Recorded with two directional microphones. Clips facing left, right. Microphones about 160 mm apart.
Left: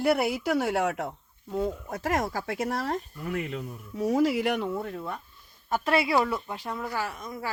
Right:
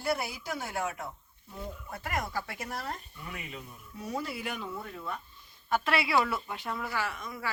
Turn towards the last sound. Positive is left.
turn(degrees=45)  # may be behind; listen again after turning